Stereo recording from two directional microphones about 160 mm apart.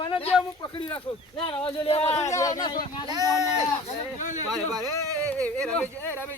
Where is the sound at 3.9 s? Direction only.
50° left (ahead or behind).